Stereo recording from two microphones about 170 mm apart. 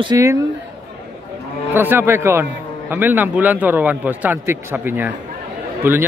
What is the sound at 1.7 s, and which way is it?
Speech, 10° right (ahead or behind).